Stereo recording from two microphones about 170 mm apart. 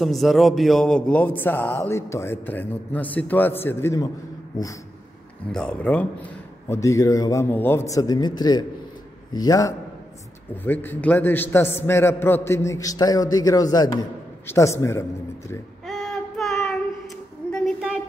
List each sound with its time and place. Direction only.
0.0 s a man's voice: centre (ahead or behind); by 4.1 s 15° left (ahead or behind)
5.5 s a man's voice: 5° left (ahead or behind); by 9.8 s 20° left (ahead or behind)
10.5 s a man's voice: 10° left (ahead or behind)
15.8 s child singing: centre (ahead or behind)
17.5 s a sound: 5° left (ahead or behind)